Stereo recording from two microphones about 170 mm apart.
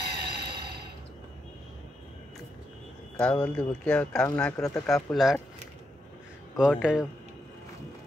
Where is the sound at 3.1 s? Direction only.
5° left (ahead or behind).